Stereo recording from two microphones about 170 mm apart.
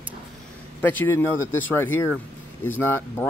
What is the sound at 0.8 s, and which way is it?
Speech, 10° left (ahead or behind).